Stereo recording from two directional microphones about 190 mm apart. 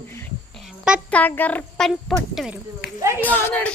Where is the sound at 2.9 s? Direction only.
15° right (ahead or behind).